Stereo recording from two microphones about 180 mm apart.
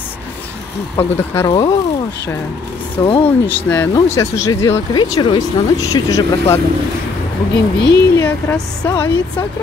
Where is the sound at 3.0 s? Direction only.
20° left (ahead or behind).